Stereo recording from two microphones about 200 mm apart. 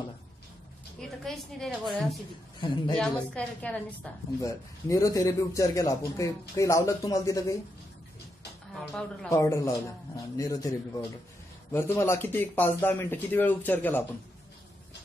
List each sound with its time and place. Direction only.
1.0 s a woman's voice: centre (ahead or behind)
8.7 s a woman's voice: centre (ahead or behind)
9.3 s a woman's voice: 15° left (ahead or behind)
11.7 s a woman's voice: 15° left (ahead or behind)